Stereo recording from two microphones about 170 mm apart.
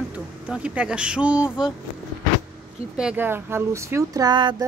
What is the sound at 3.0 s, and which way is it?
Speech, 10° right (ahead or behind).